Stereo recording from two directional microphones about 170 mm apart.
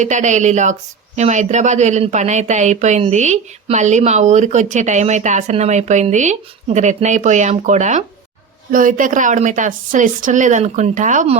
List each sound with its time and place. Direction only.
0.0 s speech: 45° right (ahead or behind)